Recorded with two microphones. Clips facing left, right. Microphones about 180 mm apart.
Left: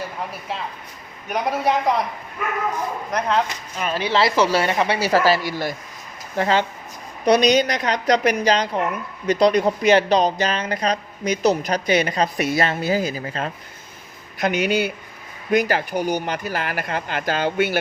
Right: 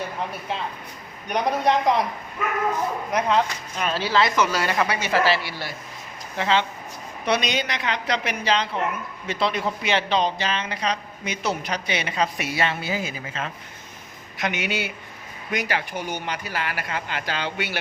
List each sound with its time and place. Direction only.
0.3 s speech: centre (ahead or behind)
3.1 s speech: 5° right (ahead or behind)
4.1 s speech: 30° left (ahead or behind)